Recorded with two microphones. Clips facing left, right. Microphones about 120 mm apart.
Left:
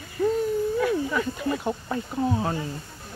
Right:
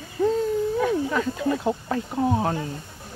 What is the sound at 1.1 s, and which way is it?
Speech, 90° right.